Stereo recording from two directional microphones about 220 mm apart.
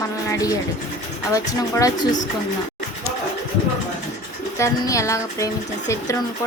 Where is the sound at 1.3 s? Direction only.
15° left (ahead or behind).